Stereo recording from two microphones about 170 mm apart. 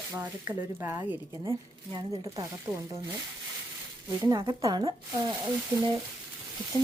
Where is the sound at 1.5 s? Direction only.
25° right (ahead or behind).